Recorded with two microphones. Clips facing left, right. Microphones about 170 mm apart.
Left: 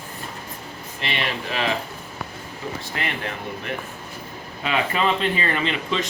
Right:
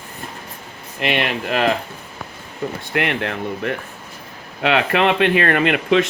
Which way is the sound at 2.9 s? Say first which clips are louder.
Right 10 dB; 70° right (ahead or behind).